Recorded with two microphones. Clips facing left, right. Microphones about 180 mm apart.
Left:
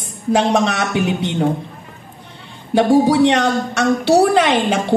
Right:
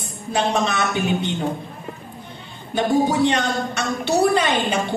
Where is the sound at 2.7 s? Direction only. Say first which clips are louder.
Left 6 dB; 80° left.